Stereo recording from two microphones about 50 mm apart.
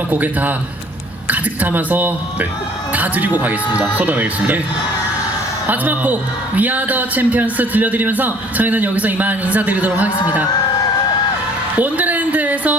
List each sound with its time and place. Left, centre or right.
0.1 s speech: right
5.6 s speech: right
11.8 s a sound: right